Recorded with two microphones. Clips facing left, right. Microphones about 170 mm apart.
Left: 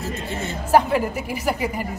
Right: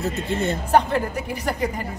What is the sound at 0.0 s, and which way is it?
Speech, 60° right (ahead or behind).